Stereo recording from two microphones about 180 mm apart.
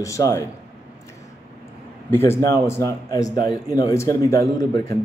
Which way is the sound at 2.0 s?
15° left (ahead or behind).